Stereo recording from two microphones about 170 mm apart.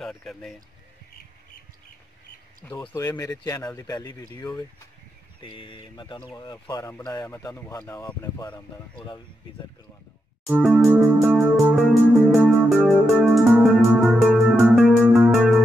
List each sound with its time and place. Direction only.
0.0 s speech: centre (ahead or behind)
2.6 s speech: 10° left (ahead or behind)
10.5 s music: 10° right (ahead or behind)